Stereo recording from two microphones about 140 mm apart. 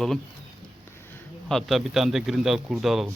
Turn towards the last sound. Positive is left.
turn(degrees=0)  # may be behind; listen again after turning